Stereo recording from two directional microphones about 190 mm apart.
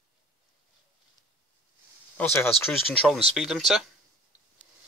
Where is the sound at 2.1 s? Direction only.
10° left (ahead or behind).